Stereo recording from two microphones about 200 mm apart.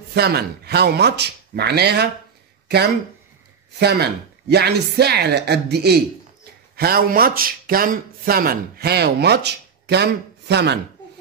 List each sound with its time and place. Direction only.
0.1 s speech: 55° right (ahead or behind)
3.8 s speech: 55° right (ahead or behind)